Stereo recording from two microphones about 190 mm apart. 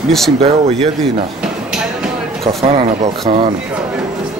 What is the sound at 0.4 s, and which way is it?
Speech, 30° right (ahead or behind).